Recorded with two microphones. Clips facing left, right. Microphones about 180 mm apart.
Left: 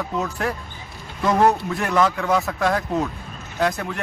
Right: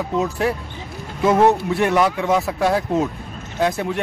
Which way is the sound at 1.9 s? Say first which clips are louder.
Left 1 dB; 15° right (ahead or behind).